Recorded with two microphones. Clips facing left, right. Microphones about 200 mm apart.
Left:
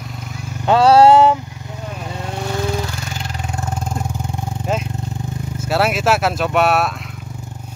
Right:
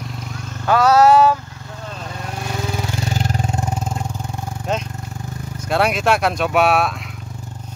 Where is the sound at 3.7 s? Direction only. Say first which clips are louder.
Even; 5° right (ahead or behind).